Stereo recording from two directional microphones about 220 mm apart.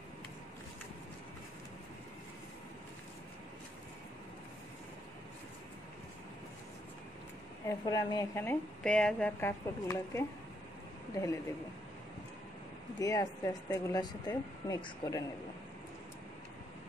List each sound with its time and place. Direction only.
7.6 s a woman's voice: 15° left (ahead or behind)
13.0 s a woman's voice: 15° left (ahead or behind)